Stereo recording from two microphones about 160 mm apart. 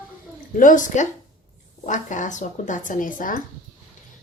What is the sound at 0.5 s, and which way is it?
Speech, 55° left (ahead or behind).